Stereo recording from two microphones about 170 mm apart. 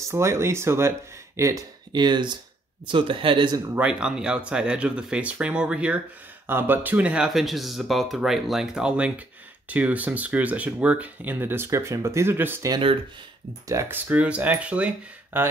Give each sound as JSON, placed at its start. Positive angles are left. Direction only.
{"t": 0.1, "sound": "speech", "side_deg": -15}
{"t": 3.7, "sound": "speech", "side_deg": -5}